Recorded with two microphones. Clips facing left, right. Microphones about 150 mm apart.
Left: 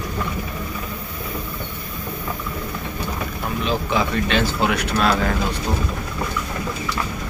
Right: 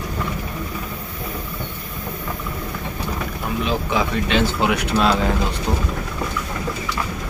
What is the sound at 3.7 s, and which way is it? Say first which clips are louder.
Speech: left 1 dB; 15° right (ahead or behind).